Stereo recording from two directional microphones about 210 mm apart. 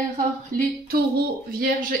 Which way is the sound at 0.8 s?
45° right (ahead or behind).